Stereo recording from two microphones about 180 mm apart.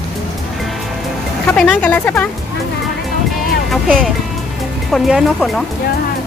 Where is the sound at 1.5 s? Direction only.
5° left (ahead or behind).